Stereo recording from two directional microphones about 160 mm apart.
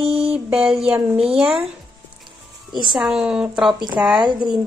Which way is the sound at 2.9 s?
5° right (ahead or behind).